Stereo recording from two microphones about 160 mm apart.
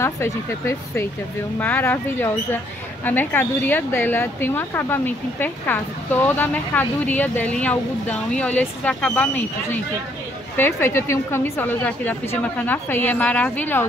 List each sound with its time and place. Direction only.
0.0 s speech: 15° left (ahead or behind)